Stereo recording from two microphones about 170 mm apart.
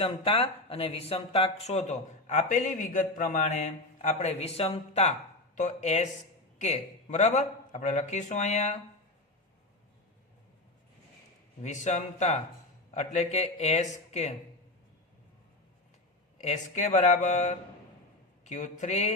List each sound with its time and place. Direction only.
0.0 s a man's voice: 30° left (ahead or behind)
11.6 s a man's voice: 45° left (ahead or behind)
16.4 s a man's voice: 45° left (ahead or behind)